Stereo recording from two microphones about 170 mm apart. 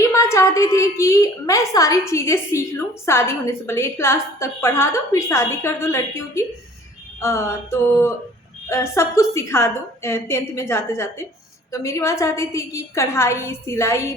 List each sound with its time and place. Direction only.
0.0 s a woman's voice: 15° left (ahead or behind)